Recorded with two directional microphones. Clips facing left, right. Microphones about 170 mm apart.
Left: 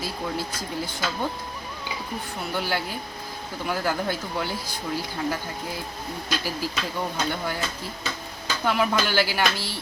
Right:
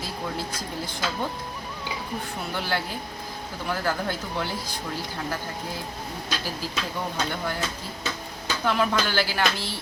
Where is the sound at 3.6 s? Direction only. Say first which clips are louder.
Left 1 dB; 10° left (ahead or behind).